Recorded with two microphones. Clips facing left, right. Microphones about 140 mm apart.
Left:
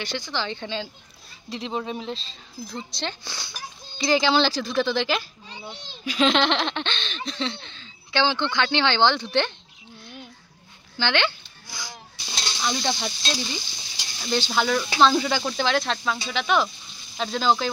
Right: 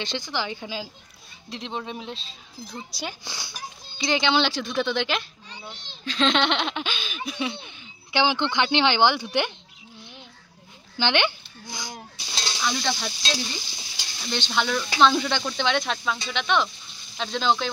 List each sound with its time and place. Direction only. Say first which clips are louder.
0.0 s speech: even; 15° right (ahead or behind)
1.5 s sizzle: left 3 dB; centre (ahead or behind)
4.0 s speech: left 2 dB; centre (ahead or behind)
11.0 s a sound: right 1 dB; 15° right (ahead or behind)
12.6 s sizzle: left 1 dB; 15° left (ahead or behind)
13.2 s sizzle: left 1 dB; centre (ahead or behind)